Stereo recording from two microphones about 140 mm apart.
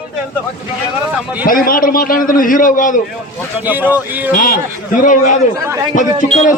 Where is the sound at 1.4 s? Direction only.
90° left; by 2.9 s 70° left (ahead or behind).